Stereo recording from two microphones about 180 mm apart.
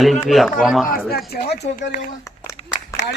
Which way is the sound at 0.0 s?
Centre (ahead or behind).